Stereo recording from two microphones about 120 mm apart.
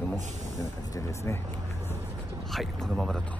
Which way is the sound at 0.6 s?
25° left (ahead or behind).